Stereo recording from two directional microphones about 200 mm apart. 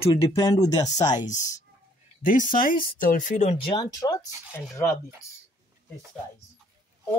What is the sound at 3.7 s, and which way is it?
Speech, 20° left (ahead or behind).